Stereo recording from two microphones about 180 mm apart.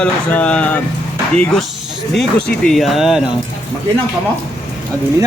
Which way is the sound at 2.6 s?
Centre (ahead or behind).